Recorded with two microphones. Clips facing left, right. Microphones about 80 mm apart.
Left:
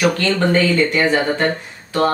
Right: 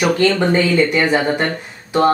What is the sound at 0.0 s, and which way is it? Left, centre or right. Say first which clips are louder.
Speech: right 2 dB; centre.